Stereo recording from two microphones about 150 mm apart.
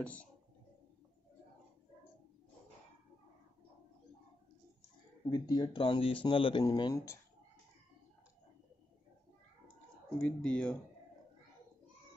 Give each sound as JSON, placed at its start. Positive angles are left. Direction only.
{"t": 0.0, "sound": "speech", "side_deg": 10}
{"t": 5.3, "sound": "speech", "side_deg": 30}
{"t": 6.6, "sound": "speech", "side_deg": 25}
{"t": 10.2, "sound": "speech", "side_deg": 5}